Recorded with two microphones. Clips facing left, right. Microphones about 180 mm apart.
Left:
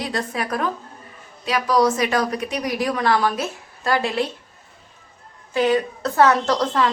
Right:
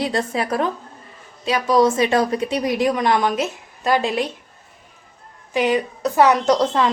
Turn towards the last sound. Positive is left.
turn(degrees=-20)  # may be behind; listen again after turning